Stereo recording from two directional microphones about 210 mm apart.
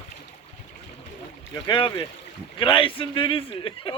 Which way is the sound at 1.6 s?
20° left (ahead or behind).